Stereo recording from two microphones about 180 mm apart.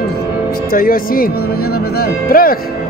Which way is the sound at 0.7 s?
55° left (ahead or behind).